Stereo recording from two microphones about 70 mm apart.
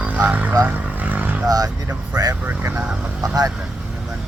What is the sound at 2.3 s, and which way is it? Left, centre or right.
Speech, right.